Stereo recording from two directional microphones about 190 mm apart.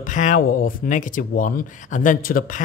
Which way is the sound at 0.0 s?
40° left (ahead or behind).